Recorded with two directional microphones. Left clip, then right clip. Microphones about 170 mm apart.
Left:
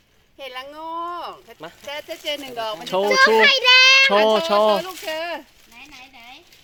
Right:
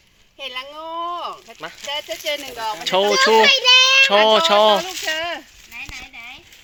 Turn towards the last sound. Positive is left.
turn(degrees=-25)  # may be behind; listen again after turning